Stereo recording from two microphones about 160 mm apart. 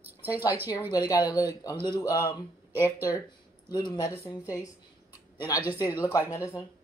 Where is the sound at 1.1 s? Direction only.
25° left (ahead or behind).